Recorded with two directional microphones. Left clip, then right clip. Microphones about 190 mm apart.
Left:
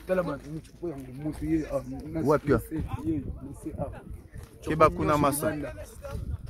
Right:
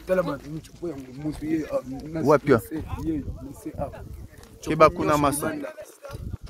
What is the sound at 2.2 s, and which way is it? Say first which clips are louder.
Speech: right 6 dB; 45° right (ahead or behind).